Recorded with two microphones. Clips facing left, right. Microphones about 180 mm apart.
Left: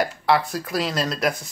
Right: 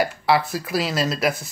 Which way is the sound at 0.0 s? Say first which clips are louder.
Right 1 dB; 5° right (ahead or behind).